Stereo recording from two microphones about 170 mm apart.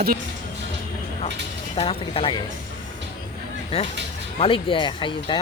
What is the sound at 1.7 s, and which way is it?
Speech, 35° left (ahead or behind).